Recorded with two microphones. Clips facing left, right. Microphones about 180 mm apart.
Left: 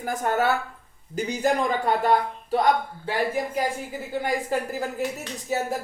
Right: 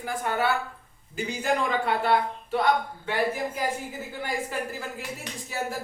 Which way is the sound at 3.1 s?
35° left (ahead or behind).